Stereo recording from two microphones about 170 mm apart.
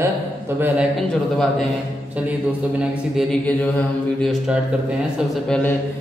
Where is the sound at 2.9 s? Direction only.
Centre (ahead or behind).